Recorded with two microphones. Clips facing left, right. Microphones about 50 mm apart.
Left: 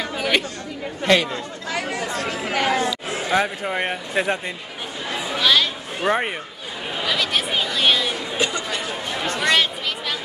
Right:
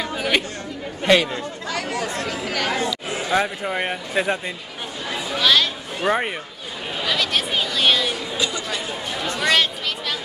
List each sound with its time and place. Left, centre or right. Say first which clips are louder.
0.0 s chatter: even; centre
1.0 s speech: right 1 dB; centre
1.7 s chatter: left 1 dB; centre
2.8 s chatter: left 1 dB; left
3.3 s speech: even; centre
5.1 s a sound: even; centre
8.4 s chatter: left 3 dB; left
9.5 s a sound: even; centre